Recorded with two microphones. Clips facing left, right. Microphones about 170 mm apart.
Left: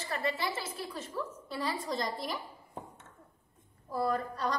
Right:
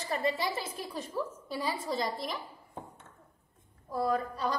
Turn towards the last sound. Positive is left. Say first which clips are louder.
# right 1 dB
turn(degrees=0)  # may be behind; listen again after turning